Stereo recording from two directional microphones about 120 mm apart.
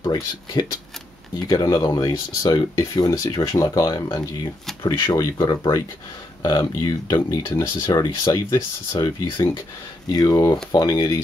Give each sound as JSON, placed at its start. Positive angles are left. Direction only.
{"t": 0.0, "sound": "speech", "side_deg": 35}